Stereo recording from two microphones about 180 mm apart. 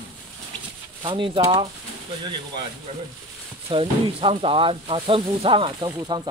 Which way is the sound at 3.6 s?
30° right (ahead or behind).